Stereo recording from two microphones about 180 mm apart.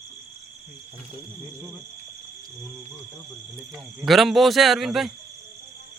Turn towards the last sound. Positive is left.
turn(degrees=0)  # may be behind; listen again after turning